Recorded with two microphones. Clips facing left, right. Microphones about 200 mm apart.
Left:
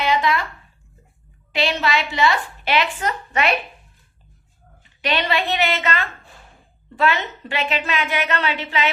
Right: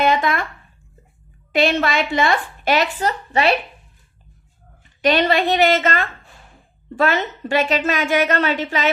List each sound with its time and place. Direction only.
0.0 s speech: 50° right (ahead or behind)
1.5 s a woman's voice: 50° right (ahead or behind); by 3.5 s 35° right (ahead or behind)
5.0 s a woman's voice: 45° right (ahead or behind)